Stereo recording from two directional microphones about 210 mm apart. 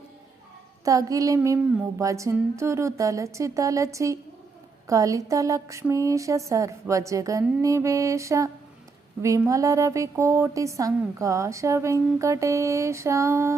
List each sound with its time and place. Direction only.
0.9 s a woman's voice: 15° right (ahead or behind)